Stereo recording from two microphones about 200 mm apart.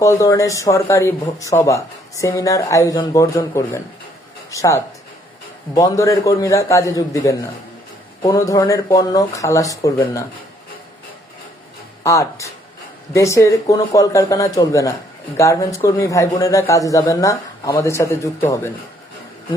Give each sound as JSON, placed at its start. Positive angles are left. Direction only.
{"t": 0.0, "sound": "speech", "side_deg": 15}
{"t": 12.0, "sound": "speech", "side_deg": 15}